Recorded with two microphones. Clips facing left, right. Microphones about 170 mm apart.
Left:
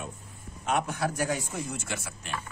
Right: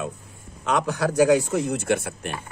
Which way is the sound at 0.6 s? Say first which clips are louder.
Right 5 dB; 90° right.